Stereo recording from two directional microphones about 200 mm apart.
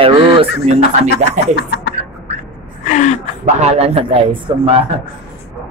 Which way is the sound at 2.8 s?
40° left (ahead or behind).